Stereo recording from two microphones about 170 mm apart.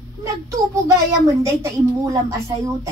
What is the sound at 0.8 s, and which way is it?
Speech, 20° right (ahead or behind).